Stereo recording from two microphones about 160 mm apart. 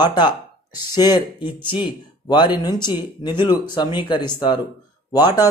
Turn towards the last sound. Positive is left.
turn(degrees=25)  # may be behind; listen again after turning